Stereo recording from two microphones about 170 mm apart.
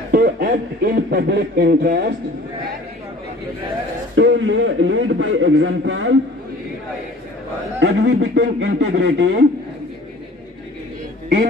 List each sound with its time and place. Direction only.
0.1 s a man's voice: 60° right (ahead or behind)
4.2 s a man's voice: 90° right
8.0 s a man's voice: 90° right